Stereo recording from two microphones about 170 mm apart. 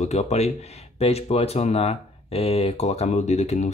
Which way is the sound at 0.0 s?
40° left (ahead or behind).